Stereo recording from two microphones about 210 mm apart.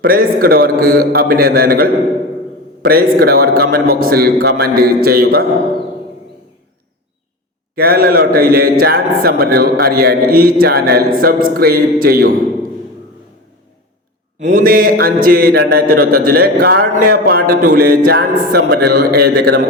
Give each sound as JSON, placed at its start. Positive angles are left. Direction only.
{"t": 0.0, "sound": "speech", "side_deg": -45}
{"t": 7.8, "sound": "speech", "side_deg": -45}
{"t": 14.4, "sound": "speech", "side_deg": -40}